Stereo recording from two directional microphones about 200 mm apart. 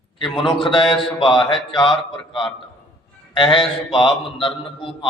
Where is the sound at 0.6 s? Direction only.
25° left (ahead or behind).